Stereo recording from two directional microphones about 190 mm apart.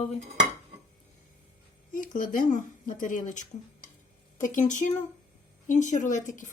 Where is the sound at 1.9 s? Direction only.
45° left (ahead or behind).